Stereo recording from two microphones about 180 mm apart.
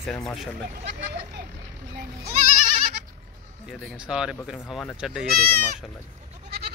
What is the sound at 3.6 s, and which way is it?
Speech, 5° right (ahead or behind).